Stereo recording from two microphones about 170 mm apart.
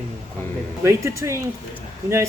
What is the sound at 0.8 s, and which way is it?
Speech, 15° right (ahead or behind).